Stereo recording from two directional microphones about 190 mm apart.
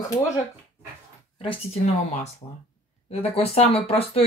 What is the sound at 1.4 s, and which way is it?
Speech, 30° left (ahead or behind).